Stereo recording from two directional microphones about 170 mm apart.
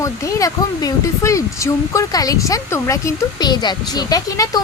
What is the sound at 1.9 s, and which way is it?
Speech, 20° left (ahead or behind).